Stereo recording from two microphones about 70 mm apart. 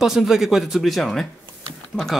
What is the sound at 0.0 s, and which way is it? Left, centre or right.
Speech, centre.